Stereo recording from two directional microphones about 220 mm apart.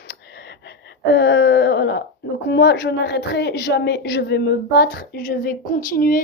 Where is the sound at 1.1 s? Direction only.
50° left (ahead or behind).